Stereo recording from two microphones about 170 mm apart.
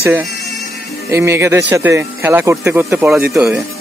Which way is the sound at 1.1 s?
15° right (ahead or behind).